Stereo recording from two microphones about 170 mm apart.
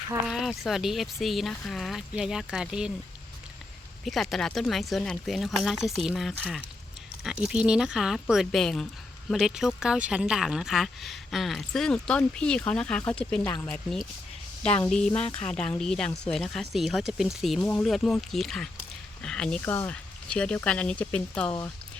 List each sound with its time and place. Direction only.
0.3 s speech: centre (ahead or behind)
4.0 s speech: centre (ahead or behind)
14.6 s speech: 35° left (ahead or behind)
14.8 s speech: 5° left (ahead or behind)
15.1 s speech: 35° left (ahead or behind)
15.4 s speech: 5° left (ahead or behind)